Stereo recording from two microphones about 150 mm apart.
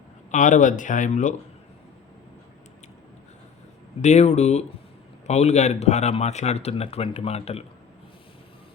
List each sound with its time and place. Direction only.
0.3 s speech: 55° left (ahead or behind)
4.0 s speech: 50° left (ahead or behind)